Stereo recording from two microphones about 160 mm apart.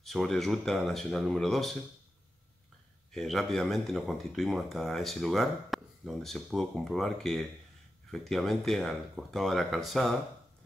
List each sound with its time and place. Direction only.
0.0 s speech: centre (ahead or behind)
3.1 s speech: centre (ahead or behind)